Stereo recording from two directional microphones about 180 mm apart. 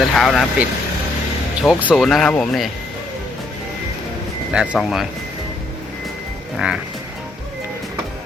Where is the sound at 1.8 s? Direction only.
Centre (ahead or behind).